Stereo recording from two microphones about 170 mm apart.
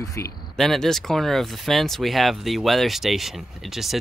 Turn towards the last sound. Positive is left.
turn(degrees=0)  # may be behind; listen again after turning